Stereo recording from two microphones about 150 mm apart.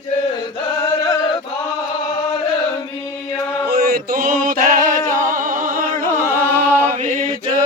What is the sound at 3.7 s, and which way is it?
Music, 90° right.